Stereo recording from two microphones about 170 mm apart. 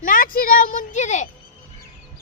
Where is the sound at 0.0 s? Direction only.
55° left (ahead or behind).